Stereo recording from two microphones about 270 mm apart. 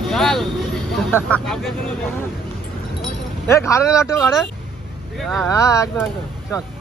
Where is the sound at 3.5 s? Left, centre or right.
Centre.